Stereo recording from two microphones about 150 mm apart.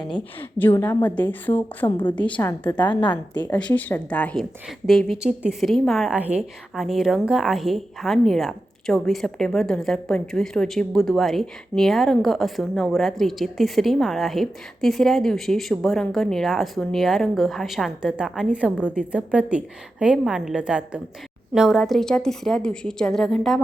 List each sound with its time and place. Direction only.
0.3 s a woman's voice: 15° left (ahead or behind)
2.8 s a woman's voice: 30° left (ahead or behind)
3.4 s a woman's voice: 10° left (ahead or behind)